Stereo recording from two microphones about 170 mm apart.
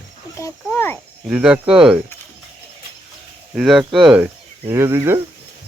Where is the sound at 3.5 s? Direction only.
5° right (ahead or behind).